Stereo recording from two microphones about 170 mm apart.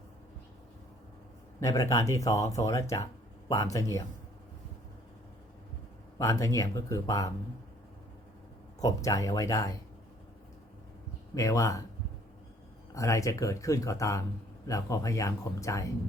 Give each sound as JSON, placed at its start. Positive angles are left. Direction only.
{"t": 1.6, "sound": "speech", "side_deg": 20}
{"t": 6.1, "sound": "speech", "side_deg": 20}
{"t": 8.8, "sound": "speech", "side_deg": 20}
{"t": 11.3, "sound": "speech", "side_deg": 20}
{"t": 12.9, "sound": "speech", "side_deg": 20}